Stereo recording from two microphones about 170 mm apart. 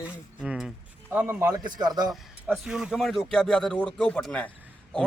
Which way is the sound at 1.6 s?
25° right (ahead or behind).